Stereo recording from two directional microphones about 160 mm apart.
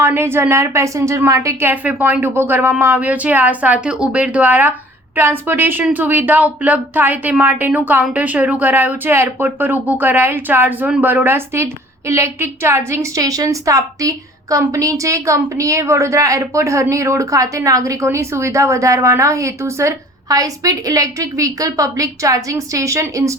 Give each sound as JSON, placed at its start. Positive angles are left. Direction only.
{"t": 0.0, "sound": "a woman's voice", "side_deg": -15}